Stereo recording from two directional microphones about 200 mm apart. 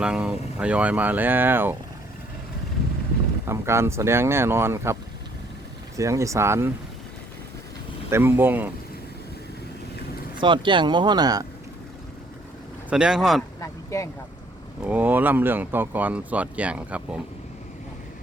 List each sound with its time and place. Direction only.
0.0 s speech: 5° right (ahead or behind)
3.4 s speech: 15° right (ahead or behind)
6.0 s speech: 15° right (ahead or behind)
8.1 s speech: 10° right (ahead or behind)
10.3 s speech: 25° right (ahead or behind)
12.9 s speech: 5° right (ahead or behind)
13.6 s speech: 15° left (ahead or behind)
14.8 s speech: 10° right (ahead or behind)